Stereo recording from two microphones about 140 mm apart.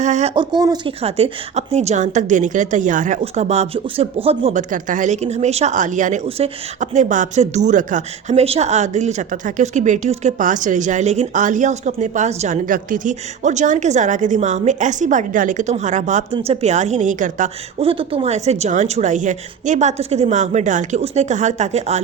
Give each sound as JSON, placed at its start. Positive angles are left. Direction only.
{"t": 0.0, "sound": "speech", "side_deg": -55}
{"t": 0.3, "sound": "speech", "side_deg": -30}
{"t": 1.0, "sound": "speech", "side_deg": -45}
{"t": 4.5, "sound": "speech", "side_deg": -65}
{"t": 6.2, "sound": "speech", "side_deg": -45}
{"t": 12.6, "sound": "speech", "side_deg": -75}
{"t": 16.3, "sound": "speech", "side_deg": -45}
{"t": 17.7, "sound": "speech", "side_deg": -40}